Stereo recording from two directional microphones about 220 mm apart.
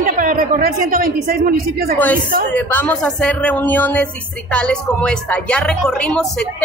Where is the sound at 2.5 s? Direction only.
5° left (ahead or behind).